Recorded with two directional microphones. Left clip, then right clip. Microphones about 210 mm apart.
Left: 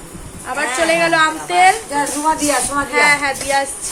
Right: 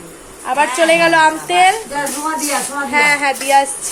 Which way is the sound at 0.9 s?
15° right (ahead or behind).